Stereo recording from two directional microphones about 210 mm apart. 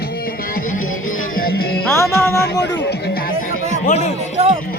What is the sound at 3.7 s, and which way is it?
Music, 35° left (ahead or behind).